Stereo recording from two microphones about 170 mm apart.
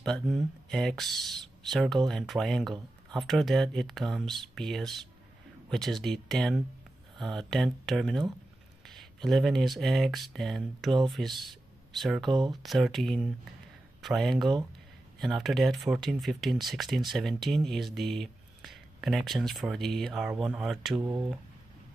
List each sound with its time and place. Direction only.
0.0 s speech: 5° left (ahead or behind)
12.3 s speech: 25° right (ahead or behind)
12.6 s speech: centre (ahead or behind)